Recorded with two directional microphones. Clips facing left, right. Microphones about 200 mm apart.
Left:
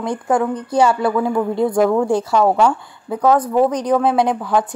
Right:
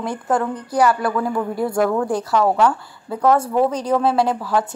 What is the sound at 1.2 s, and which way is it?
Speech, 25° left (ahead or behind).